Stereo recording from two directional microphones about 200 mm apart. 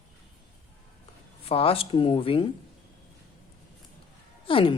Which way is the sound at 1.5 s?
30° left (ahead or behind).